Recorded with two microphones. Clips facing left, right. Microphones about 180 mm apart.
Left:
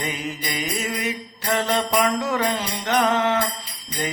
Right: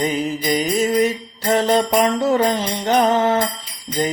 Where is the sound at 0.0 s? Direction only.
40° right (ahead or behind).